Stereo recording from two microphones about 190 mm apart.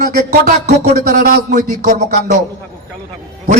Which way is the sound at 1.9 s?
40° right (ahead or behind).